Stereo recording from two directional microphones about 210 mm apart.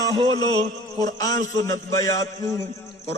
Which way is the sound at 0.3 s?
20° left (ahead or behind).